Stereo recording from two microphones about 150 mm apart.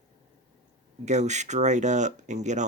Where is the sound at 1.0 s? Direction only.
50° right (ahead or behind).